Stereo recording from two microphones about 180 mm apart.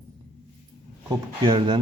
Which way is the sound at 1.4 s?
25° right (ahead or behind).